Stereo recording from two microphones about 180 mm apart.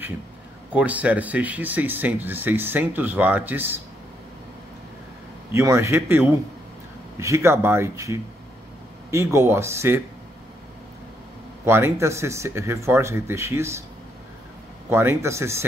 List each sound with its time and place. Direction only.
0.7 s speech: 10° right (ahead or behind)
5.5 s speech: 15° right (ahead or behind)
11.6 s speech: 15° right (ahead or behind)
14.9 s speech: 15° right (ahead or behind)